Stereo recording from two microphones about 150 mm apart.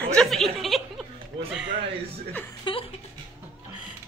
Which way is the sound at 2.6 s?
35° left (ahead or behind).